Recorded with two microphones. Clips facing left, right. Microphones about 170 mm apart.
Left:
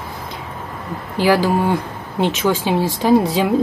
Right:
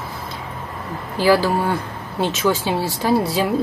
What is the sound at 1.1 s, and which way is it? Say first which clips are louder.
Speech: left 1 dB; 15° left (ahead or behind).